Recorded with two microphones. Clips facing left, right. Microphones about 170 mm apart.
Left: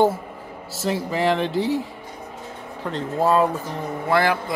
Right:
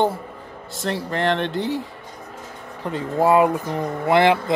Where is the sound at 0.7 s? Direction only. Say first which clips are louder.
Left 1 dB; 5° left (ahead or behind).